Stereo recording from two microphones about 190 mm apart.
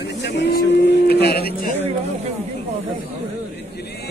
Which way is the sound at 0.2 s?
60° left (ahead or behind).